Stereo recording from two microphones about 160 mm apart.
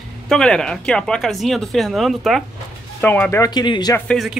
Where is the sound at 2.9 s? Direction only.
10° left (ahead or behind).